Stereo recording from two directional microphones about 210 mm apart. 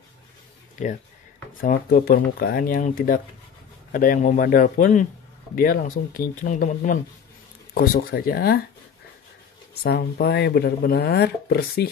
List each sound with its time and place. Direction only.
0.8 s speech: 35° left (ahead or behind)
9.8 s speech: 45° left (ahead or behind)